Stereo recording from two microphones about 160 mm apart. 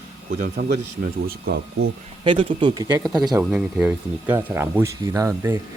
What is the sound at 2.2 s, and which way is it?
Speech, 35° right (ahead or behind).